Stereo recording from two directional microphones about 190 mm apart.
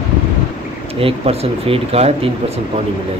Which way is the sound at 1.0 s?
30° right (ahead or behind).